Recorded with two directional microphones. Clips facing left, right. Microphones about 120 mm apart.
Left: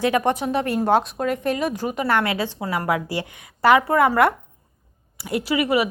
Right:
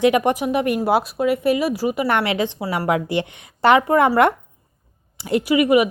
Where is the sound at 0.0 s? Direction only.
15° right (ahead or behind).